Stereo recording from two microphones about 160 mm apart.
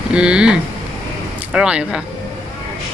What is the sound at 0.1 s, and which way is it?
Speech, 5° right (ahead or behind).